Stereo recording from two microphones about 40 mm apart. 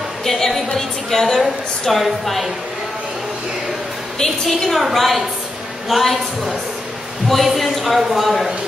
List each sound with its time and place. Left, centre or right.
0.2 s a sound: centre
1.2 s a woman's voice: centre
4.2 s a woman's voice: centre